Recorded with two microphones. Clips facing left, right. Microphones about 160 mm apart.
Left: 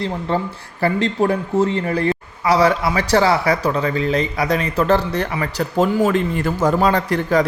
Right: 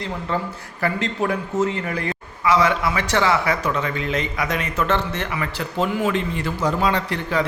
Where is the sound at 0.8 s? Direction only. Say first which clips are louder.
Left 5 dB; 30° left (ahead or behind).